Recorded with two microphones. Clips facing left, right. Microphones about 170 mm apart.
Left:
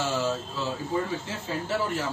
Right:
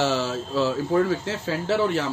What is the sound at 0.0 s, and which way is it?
Speech, 80° right.